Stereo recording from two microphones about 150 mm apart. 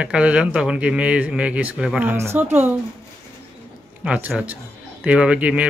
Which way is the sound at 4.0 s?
10° right (ahead or behind).